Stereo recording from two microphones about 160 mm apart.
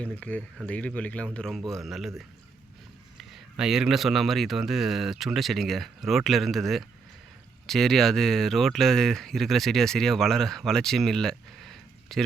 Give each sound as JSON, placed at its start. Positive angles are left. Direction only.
{"t": 0.0, "sound": "speech", "side_deg": 10}